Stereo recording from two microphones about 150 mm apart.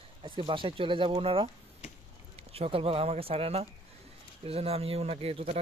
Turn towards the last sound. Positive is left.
turn(degrees=-40)  # may be behind; listen again after turning